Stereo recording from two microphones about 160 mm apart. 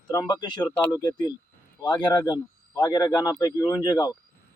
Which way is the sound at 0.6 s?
10° left (ahead or behind).